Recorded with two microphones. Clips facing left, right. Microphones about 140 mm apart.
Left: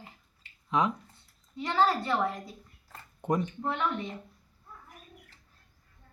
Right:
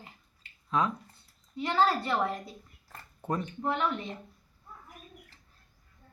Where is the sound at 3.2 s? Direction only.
20° left (ahead or behind).